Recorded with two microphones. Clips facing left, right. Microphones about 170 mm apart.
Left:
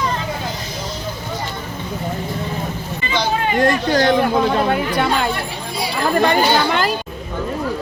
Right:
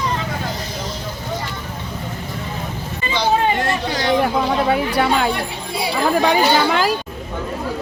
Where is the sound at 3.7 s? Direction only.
50° left (ahead or behind).